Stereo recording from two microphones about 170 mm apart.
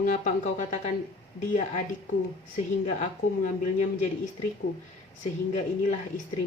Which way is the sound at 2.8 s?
45° left (ahead or behind).